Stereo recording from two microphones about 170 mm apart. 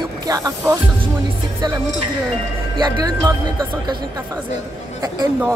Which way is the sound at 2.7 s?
25° right (ahead or behind).